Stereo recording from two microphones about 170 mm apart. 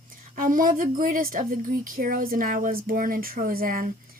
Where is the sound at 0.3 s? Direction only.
55° right (ahead or behind).